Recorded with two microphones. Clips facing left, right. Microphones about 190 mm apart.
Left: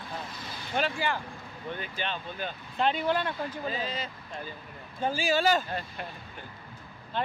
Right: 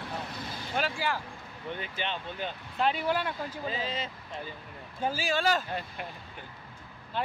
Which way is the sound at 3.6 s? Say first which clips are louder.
Right 3 dB; 25° right (ahead or behind).